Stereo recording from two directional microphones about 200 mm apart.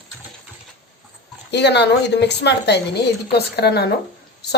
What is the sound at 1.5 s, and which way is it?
A woman's voice, 60° left (ahead or behind).